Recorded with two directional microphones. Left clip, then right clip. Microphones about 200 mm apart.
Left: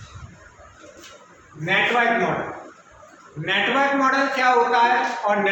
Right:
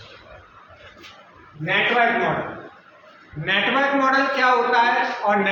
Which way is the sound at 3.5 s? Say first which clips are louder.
Even; 10° right (ahead or behind).